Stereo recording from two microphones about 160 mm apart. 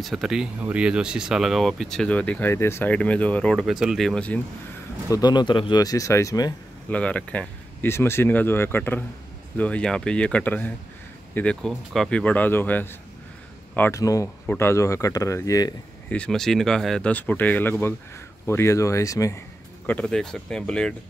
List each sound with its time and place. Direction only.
0.0 s speech: centre (ahead or behind)
5.1 s speech: 25° left (ahead or behind)
6.9 s speech: 10° left (ahead or behind)
16.1 s speech: 5° left (ahead or behind)
19.9 s speech: 5° left (ahead or behind)